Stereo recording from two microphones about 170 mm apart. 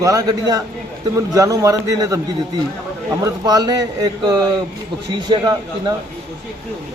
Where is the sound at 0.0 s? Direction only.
20° right (ahead or behind).